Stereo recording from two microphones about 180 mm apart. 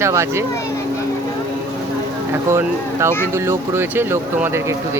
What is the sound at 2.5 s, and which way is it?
Speech, 15° right (ahead or behind).